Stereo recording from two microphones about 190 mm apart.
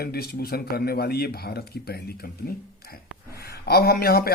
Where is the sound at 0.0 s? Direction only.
55° left (ahead or behind).